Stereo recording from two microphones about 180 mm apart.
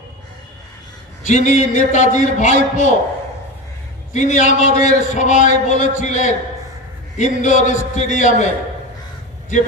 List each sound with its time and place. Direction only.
1.2 s a man's voice: 45° left (ahead or behind)
4.1 s a man's voice: 40° left (ahead or behind)